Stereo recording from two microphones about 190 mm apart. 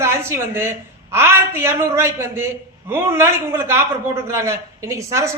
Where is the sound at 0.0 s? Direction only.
15° right (ahead or behind).